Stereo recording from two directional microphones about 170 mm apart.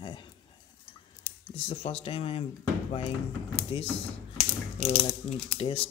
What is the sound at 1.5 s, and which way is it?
Speech, 35° left (ahead or behind).